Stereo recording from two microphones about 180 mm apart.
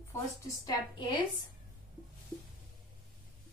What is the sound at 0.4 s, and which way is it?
Speech, 20° left (ahead or behind).